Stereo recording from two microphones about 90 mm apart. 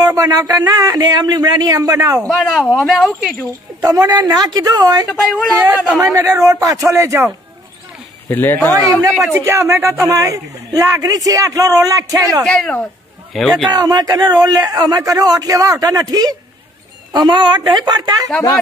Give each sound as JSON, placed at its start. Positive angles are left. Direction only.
{"t": 0.0, "sound": "speech", "side_deg": -45}
{"t": 2.2, "sound": "speech", "side_deg": 0}
{"t": 3.8, "sound": "speech", "side_deg": -45}
{"t": 5.0, "sound": "speech", "side_deg": 0}
{"t": 5.9, "sound": "a man's voice", "side_deg": -40}
{"t": 8.3, "sound": "speech", "side_deg": 25}
{"t": 9.3, "sound": "a man's voice", "side_deg": -30}
{"t": 12.4, "sound": "speech", "side_deg": 5}
{"t": 13.7, "sound": "speech", "side_deg": -45}